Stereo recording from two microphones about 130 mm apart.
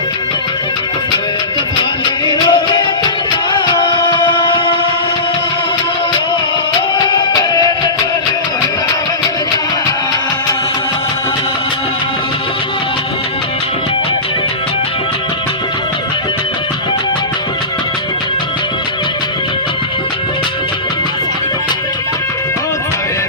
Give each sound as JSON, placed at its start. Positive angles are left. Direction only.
{"t": 2.2, "sound": "music", "side_deg": 35}
{"t": 7.1, "sound": "music", "side_deg": 30}